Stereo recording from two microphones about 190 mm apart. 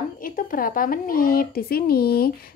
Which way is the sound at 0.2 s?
45° left (ahead or behind).